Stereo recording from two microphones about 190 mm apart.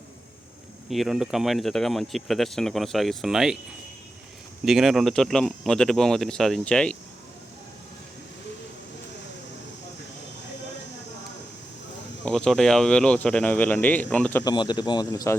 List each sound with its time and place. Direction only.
0.9 s speech: centre (ahead or behind)
4.6 s speech: centre (ahead or behind)
12.2 s speech: 5° left (ahead or behind)
14.4 s speech: 25° left (ahead or behind)